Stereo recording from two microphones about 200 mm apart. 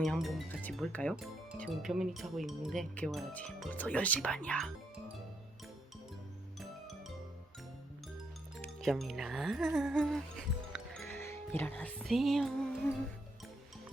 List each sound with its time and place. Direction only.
0.0 s speech: centre (ahead or behind)
8.5 s speech: centre (ahead or behind)
11.2 s music: 10° left (ahead or behind)